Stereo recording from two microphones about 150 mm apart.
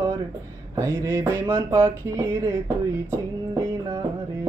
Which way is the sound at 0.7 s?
20° right (ahead or behind).